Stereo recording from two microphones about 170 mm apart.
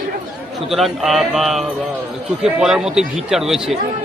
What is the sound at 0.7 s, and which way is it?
Speech, centre (ahead or behind).